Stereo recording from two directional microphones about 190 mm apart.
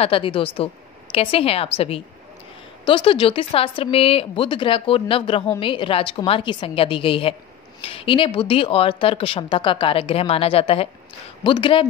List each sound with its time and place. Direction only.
0.0 s a woman's voice: 25° left (ahead or behind)